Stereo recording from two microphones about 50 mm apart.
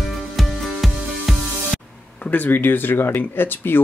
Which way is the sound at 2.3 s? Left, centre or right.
Left.